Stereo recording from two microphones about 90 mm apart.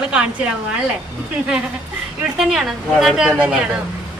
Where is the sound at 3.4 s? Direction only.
15° right (ahead or behind).